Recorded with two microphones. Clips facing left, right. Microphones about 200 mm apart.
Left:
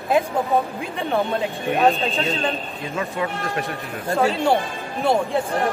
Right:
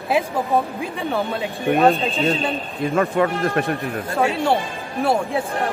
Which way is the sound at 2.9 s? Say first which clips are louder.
Right 7 dB; 55° right (ahead or behind).